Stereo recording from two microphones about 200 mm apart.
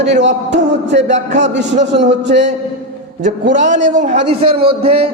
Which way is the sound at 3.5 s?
35° right (ahead or behind).